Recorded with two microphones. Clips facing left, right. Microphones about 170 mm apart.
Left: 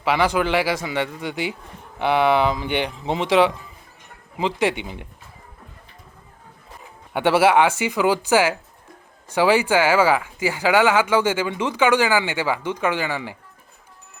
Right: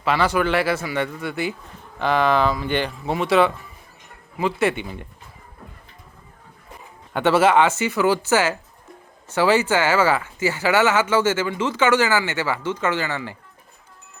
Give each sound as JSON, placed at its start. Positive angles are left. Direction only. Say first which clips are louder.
{"t": 0.0, "sound": "speech", "louder": "even", "side_deg": 15}
{"t": 7.1, "sound": "speech", "louder": "even", "side_deg": 10}